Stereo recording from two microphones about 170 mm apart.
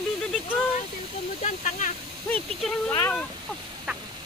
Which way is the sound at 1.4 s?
45° left (ahead or behind).